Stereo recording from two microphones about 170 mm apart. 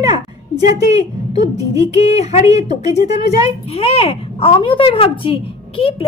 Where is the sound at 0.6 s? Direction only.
20° right (ahead or behind).